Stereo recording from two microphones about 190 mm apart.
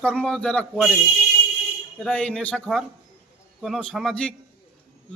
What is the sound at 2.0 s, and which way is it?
A man's voice, 5° left (ahead or behind).